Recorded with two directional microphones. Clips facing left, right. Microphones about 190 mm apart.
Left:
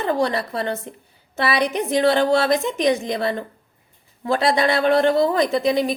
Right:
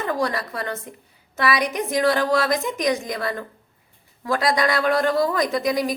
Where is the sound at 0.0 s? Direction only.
30° left (ahead or behind).